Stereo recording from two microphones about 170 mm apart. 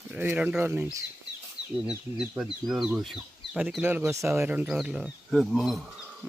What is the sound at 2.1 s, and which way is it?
Speech, 5° right (ahead or behind).